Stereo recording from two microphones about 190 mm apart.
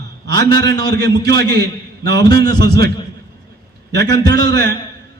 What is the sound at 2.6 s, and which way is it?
Speech, 60° right (ahead or behind).